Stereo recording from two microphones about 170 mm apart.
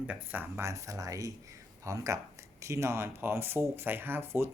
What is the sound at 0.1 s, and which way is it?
Speech, 10° right (ahead or behind).